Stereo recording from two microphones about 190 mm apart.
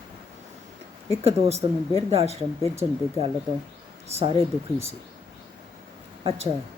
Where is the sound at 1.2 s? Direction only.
35° right (ahead or behind).